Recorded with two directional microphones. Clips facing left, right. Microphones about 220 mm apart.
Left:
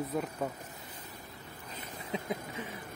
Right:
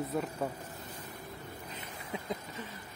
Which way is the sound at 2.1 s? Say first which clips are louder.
Left 3 dB; 15° left (ahead or behind).